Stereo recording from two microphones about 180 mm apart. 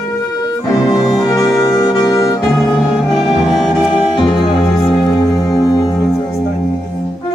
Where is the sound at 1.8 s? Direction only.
20° left (ahead or behind).